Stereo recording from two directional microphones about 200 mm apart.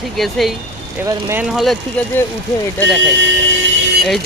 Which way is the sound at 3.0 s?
65° right (ahead or behind).